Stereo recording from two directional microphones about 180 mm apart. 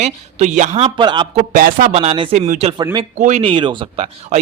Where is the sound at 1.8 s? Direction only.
35° right (ahead or behind).